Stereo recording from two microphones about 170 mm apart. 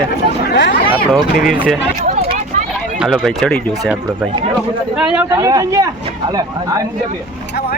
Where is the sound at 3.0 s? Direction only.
Centre (ahead or behind).